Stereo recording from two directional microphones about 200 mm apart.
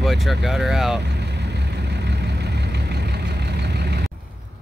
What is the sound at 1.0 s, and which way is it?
Vehicle, 60° right (ahead or behind).